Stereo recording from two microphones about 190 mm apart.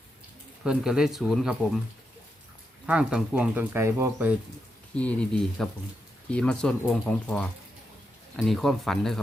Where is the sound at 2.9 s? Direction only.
5° right (ahead or behind).